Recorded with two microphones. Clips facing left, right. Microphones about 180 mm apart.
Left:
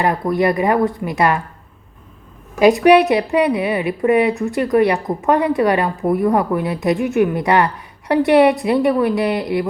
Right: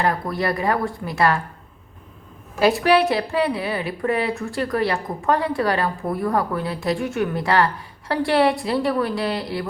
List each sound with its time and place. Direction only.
0.0 s a woman's voice: 20° left (ahead or behind)
2.6 s a woman's voice: 15° left (ahead or behind)